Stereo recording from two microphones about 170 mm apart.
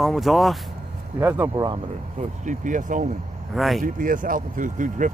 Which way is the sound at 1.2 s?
15° right (ahead or behind).